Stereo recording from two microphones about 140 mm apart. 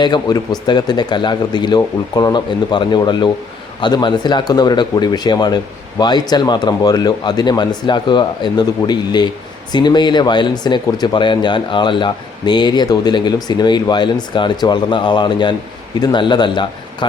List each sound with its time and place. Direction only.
0.0 s speech: 30° left (ahead or behind)